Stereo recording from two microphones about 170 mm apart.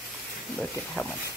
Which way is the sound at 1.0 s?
5° left (ahead or behind).